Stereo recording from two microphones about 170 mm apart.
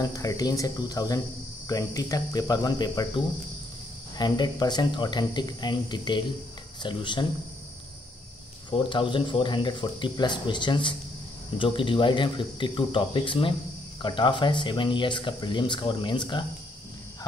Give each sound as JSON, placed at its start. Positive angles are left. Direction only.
{"t": 0.0, "sound": "speech", "side_deg": 20}
{"t": 4.2, "sound": "speech", "side_deg": 25}
{"t": 8.6, "sound": "speech", "side_deg": 30}